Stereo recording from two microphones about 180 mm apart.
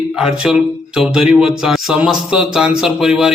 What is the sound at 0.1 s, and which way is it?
A man's voice, 5° right (ahead or behind).